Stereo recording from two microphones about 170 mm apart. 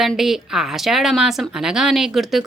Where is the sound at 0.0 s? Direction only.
Centre (ahead or behind).